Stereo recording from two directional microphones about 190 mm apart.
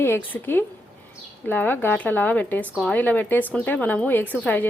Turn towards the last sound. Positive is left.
turn(degrees=10)  # may be behind; listen again after turning